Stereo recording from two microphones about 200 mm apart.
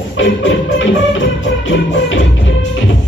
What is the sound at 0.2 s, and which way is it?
Music, 65° left (ahead or behind).